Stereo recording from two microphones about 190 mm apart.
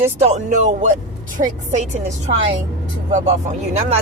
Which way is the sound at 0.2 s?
35° right (ahead or behind).